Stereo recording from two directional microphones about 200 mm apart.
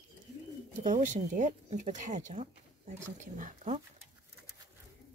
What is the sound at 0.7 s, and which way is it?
Speech, 40° right (ahead or behind).